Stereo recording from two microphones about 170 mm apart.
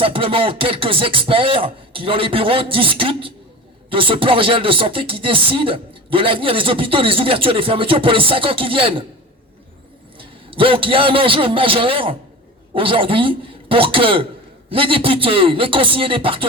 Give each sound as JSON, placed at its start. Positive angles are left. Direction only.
{"t": 0.0, "sound": "speech", "side_deg": -30}
{"t": 10.2, "sound": "a man's voice", "side_deg": -30}